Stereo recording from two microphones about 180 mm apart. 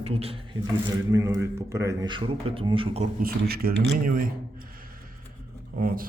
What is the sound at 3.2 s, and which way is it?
Speech, 55° right (ahead or behind).